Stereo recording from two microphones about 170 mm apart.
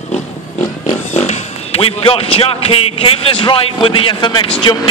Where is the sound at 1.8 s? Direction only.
35° left (ahead or behind).